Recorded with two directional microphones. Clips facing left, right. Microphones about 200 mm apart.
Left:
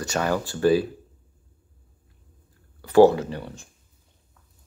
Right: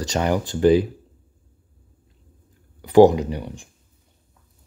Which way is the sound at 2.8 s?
15° right (ahead or behind).